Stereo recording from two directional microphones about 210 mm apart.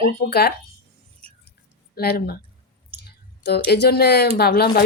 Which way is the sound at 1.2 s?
30° right (ahead or behind).